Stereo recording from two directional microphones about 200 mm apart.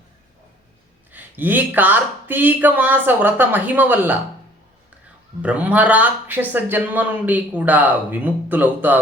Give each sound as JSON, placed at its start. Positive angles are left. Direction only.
{"t": 1.1, "sound": "speech", "side_deg": -10}
{"t": 5.4, "sound": "speech", "side_deg": -5}